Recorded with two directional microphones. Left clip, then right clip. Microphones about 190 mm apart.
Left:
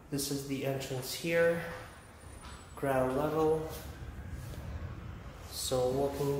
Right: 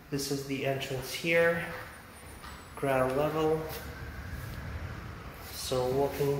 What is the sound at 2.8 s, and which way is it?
Speech, 5° left (ahead or behind).